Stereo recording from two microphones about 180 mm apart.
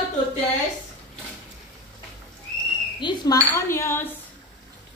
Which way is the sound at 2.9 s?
25° left (ahead or behind).